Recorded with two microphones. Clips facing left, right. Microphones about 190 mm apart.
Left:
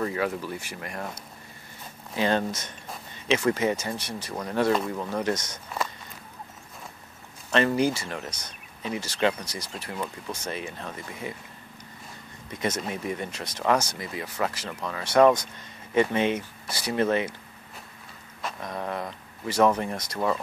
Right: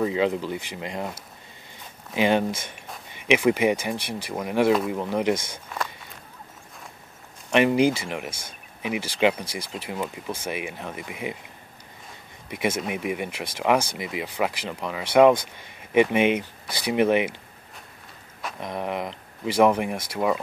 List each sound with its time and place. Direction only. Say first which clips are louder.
0.0 s speech: right 5 dB; 20° right (ahead or behind)
7.5 s speech: right 4 dB; 15° right (ahead or behind)
12.4 s speech: right 3 dB; 10° right (ahead or behind)
18.6 s speech: right 4 dB; 20° right (ahead or behind)